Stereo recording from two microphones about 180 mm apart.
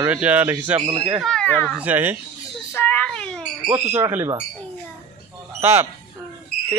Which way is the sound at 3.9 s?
15° right (ahead or behind).